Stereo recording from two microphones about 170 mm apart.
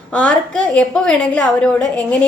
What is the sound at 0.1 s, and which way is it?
A woman's voice, 5° left (ahead or behind).